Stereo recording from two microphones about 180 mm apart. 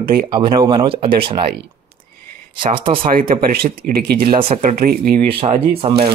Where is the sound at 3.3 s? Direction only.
55° right (ahead or behind).